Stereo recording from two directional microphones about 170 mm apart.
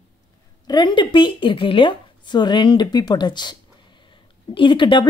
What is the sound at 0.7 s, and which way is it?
Speech, 25° left (ahead or behind).